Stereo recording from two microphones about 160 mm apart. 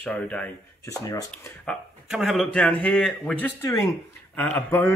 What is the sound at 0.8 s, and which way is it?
Speech, 20° left (ahead or behind).